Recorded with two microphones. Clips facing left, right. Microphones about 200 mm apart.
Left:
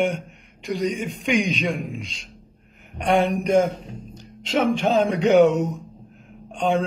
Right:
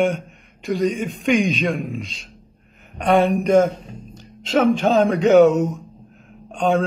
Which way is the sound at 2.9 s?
15° left (ahead or behind).